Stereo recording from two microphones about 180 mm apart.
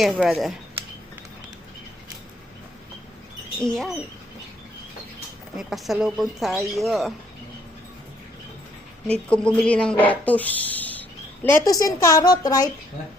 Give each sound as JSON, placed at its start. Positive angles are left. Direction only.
{"t": 0.0, "sound": "speech", "side_deg": 0}
{"t": 3.6, "sound": "speech", "side_deg": 0}
{"t": 5.5, "sound": "speech", "side_deg": 0}
{"t": 9.3, "sound": "a woman's voice", "side_deg": 5}